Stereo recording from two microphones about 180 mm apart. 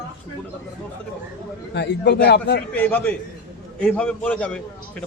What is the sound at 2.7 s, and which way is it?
A man's voice, 10° left (ahead or behind).